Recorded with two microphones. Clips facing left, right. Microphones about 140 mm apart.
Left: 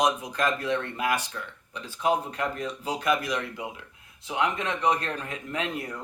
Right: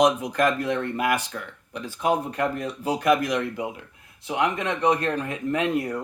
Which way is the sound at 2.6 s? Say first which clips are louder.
Right 4 dB; 50° right (ahead or behind).